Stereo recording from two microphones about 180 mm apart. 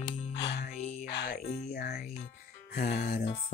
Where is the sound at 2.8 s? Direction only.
55° left (ahead or behind).